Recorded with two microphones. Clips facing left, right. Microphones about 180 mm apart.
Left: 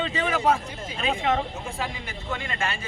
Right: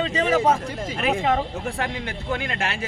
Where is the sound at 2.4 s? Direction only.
70° right (ahead or behind).